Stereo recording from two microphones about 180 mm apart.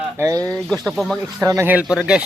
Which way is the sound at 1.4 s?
15° right (ahead or behind).